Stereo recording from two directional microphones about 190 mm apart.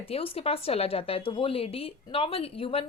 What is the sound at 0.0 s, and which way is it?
A woman's voice, 30° left (ahead or behind).